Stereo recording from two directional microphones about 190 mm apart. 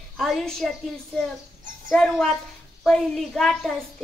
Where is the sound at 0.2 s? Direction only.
Centre (ahead or behind).